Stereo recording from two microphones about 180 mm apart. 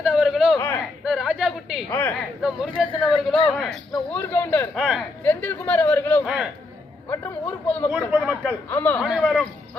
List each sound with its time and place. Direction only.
0.0 s a sound: centre (ahead or behind)
1.9 s a man's voice: 10° left (ahead or behind)
2.4 s speech: 5° right (ahead or behind)
2.9 s speech: 30° left (ahead or behind)
3.5 s a man's voice: 5° left (ahead or behind)
4.7 s speech: centre (ahead or behind)
5.2 s a man's voice: 10° left (ahead or behind)
6.2 s speech: 5° right (ahead or behind)
7.7 s a man's voice: 5° left (ahead or behind)
7.9 s speech: 5° right (ahead or behind)
8.7 s a man's voice: 10° left (ahead or behind)